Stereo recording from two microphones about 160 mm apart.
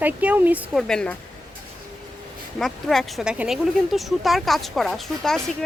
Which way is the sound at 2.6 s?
Centre (ahead or behind).